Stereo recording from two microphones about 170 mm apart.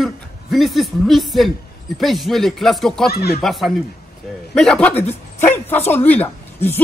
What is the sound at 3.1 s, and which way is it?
Speech, 65° left (ahead or behind).